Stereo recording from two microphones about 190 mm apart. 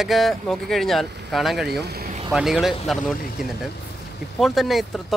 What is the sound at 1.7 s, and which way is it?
Speech, 60° right (ahead or behind).